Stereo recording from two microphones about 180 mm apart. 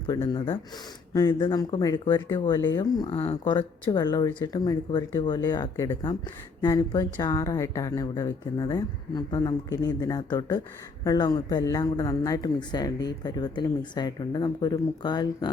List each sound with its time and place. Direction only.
0.1 s speech: 25° left (ahead or behind)